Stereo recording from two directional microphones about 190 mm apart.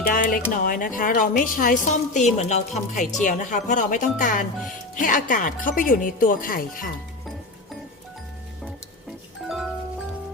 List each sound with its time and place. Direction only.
0.1 s a woman's voice: 45° left (ahead or behind)
9.5 s music: centre (ahead or behind)